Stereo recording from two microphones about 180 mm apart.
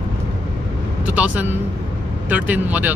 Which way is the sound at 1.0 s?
5° right (ahead or behind).